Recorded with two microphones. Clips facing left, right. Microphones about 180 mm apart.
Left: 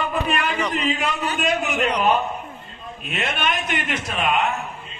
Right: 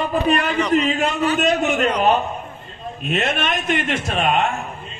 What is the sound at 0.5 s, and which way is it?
Speech, 5° left (ahead or behind).